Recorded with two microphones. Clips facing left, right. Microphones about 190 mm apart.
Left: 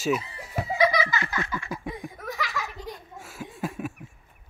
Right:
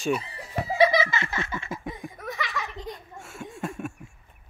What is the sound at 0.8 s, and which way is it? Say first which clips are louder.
Laughter: right 3 dB; 25° right (ahead or behind).